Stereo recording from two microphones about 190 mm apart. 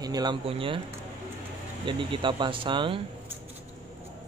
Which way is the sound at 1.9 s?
25° right (ahead or behind).